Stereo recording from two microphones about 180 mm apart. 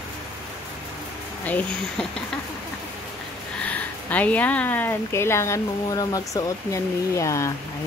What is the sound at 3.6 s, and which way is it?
Speech, 10° left (ahead or behind).